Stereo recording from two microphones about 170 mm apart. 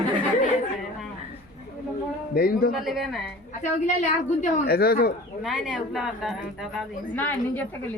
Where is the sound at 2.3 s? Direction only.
60° left (ahead or behind).